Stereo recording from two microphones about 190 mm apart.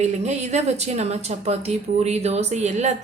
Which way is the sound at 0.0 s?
35° right (ahead or behind).